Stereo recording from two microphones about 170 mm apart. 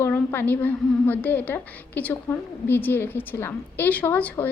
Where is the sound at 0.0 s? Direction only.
15° left (ahead or behind).